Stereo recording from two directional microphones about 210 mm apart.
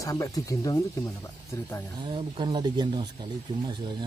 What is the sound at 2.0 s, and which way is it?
Speech, 20° right (ahead or behind).